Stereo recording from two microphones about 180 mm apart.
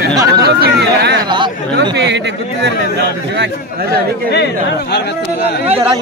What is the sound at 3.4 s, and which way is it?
Speech, 55° right (ahead or behind).